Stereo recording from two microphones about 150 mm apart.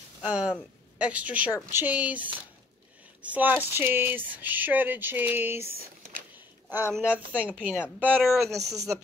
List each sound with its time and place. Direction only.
0.2 s a woman's voice: 10° right (ahead or behind)
3.2 s speech: 10° right (ahead or behind)
6.7 s speech: 15° right (ahead or behind)
8.2 s a woman's voice: centre (ahead or behind)
8.5 s speech: 20° right (ahead or behind)